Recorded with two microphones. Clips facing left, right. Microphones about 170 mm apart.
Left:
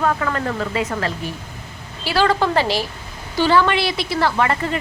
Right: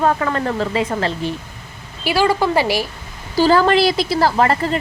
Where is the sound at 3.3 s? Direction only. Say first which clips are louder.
Right 3 dB; 35° right (ahead or behind).